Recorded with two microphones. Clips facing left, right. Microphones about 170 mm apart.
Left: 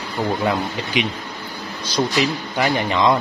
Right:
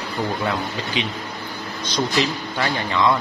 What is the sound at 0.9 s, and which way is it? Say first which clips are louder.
Speech: left 4 dB; 15° left (ahead or behind).